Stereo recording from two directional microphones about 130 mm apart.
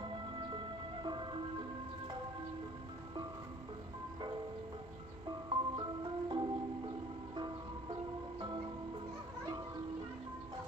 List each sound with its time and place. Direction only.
0.0 s music: 40° right (ahead or behind)
5.5 s music: 35° right (ahead or behind)